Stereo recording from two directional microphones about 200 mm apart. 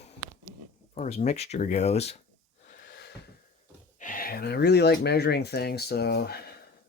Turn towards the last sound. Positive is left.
turn(degrees=50)  # may be behind; listen again after turning